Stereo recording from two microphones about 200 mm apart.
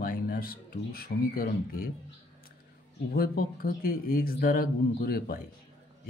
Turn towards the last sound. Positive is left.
turn(degrees=50)  # may be behind; listen again after turning